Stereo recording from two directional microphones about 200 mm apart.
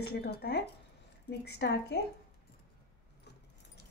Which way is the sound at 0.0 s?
50° left (ahead or behind).